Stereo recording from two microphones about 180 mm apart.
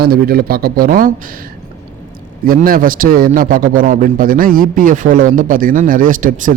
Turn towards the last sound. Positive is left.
turn(degrees=-45)  # may be behind; listen again after turning